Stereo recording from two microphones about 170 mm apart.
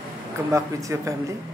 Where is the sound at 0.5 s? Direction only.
20° right (ahead or behind).